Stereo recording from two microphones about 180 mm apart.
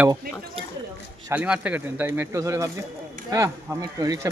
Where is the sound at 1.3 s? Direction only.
5° right (ahead or behind).